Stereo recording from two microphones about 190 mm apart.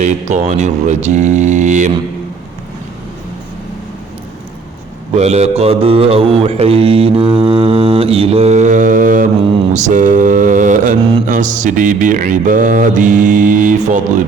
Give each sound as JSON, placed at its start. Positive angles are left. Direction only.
{"t": 0.0, "sound": "mantra", "side_deg": -40}
{"t": 5.1, "sound": "mantra", "side_deg": -35}